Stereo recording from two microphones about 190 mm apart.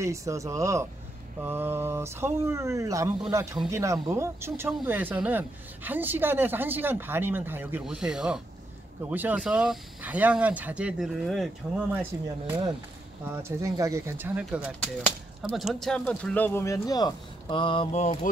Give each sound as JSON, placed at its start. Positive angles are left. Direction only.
{"t": 0.0, "sound": "speech", "side_deg": -15}